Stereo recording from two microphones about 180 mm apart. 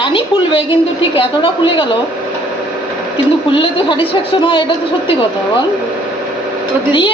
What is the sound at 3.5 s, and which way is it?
A woman's voice, 30° left (ahead or behind).